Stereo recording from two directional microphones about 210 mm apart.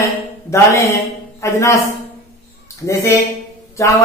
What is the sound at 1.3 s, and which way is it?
Speech, 15° left (ahead or behind).